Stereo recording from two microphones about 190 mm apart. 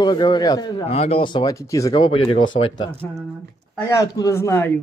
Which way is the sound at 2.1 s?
30° left (ahead or behind).